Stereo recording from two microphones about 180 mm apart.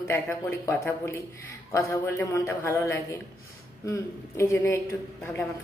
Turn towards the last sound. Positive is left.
turn(degrees=15)  # may be behind; listen again after turning